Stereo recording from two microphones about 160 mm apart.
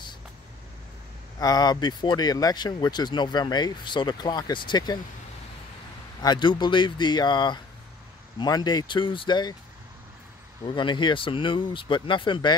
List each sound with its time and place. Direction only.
1.4 s speech: 25° left (ahead or behind)
6.2 s speech: 30° left (ahead or behind)
10.6 s speech: 30° left (ahead or behind)